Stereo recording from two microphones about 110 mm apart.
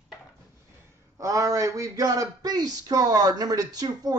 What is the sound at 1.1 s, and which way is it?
Speech, 30° right (ahead or behind).